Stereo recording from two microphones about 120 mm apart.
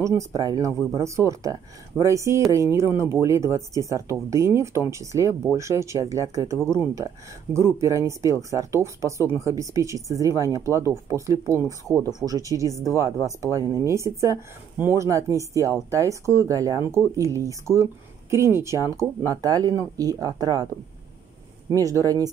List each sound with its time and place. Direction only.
0.0 s speech: 25° right (ahead or behind)
21.6 s speech: 25° right (ahead or behind)